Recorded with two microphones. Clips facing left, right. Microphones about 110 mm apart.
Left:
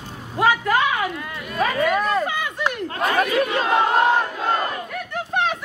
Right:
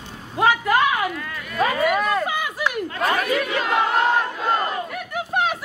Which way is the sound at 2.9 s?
35° left (ahead or behind).